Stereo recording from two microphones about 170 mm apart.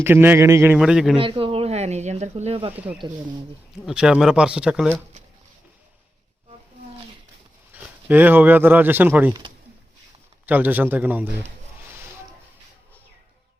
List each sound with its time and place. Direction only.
0.0 s a man's voice: 10° right (ahead or behind)
0.8 s speech: centre (ahead or behind)
1.2 s speech: 30° right (ahead or behind)
3.8 s speech: 5° right (ahead or behind)
7.7 s speech: 10° right (ahead or behind)
10.4 s a man's voice: 10° right (ahead or behind)